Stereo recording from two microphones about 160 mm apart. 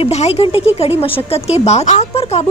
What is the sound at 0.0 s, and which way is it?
A woman's voice, 35° left (ahead or behind).